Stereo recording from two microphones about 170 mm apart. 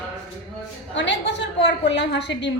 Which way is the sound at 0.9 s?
90° left.